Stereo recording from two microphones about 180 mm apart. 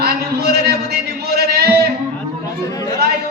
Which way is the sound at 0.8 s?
65° right (ahead or behind).